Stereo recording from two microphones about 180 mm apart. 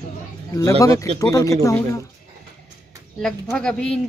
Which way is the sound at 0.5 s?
20° left (ahead or behind).